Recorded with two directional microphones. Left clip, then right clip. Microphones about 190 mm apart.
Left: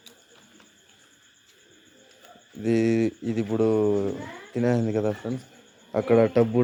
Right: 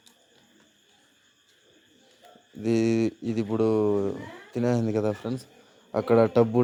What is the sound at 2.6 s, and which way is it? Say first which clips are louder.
A man's voice: left 1 dB; 15° right (ahead or behind).